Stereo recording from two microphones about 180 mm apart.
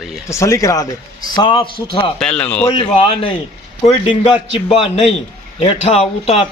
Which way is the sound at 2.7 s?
30° left (ahead or behind).